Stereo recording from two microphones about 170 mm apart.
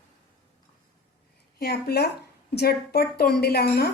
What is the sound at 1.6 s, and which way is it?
A woman's voice, 65° left (ahead or behind).